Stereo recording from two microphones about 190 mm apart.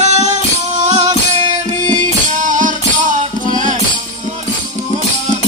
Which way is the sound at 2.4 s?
45° right (ahead or behind).